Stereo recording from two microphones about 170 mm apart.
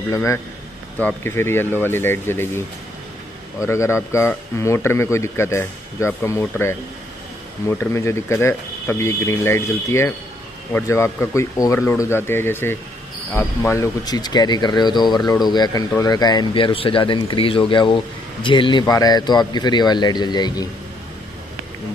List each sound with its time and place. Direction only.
0.1 s speech: 15° left (ahead or behind)
3.6 s speech: 15° left (ahead or behind)